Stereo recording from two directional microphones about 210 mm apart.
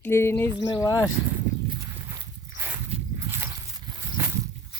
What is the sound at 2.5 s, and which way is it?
Walk, 10° right (ahead or behind).